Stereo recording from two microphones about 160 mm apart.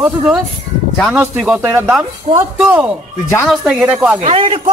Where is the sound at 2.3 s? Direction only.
40° right (ahead or behind).